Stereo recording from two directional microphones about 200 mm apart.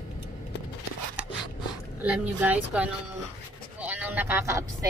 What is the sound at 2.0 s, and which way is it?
Speech, 5° right (ahead or behind).